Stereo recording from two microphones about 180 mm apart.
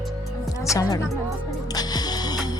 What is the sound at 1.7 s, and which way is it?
Music, 20° left (ahead or behind).